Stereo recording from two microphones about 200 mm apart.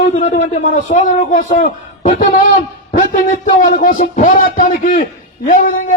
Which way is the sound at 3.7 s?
45° left (ahead or behind).